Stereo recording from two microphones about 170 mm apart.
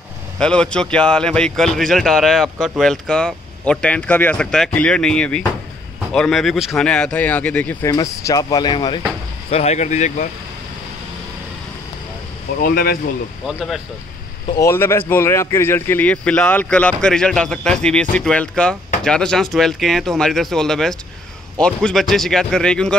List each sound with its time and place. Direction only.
0.4 s speech: 5° left (ahead or behind)
7.8 s speech: 20° left (ahead or behind)
9.5 s speech: 40° left (ahead or behind)
12.6 s speech: 60° left (ahead or behind)
13.5 s speech: 5° right (ahead or behind)
14.6 s speech: 15° left (ahead or behind)